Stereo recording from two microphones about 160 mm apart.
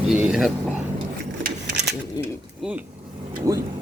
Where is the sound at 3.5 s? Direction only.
20° right (ahead or behind).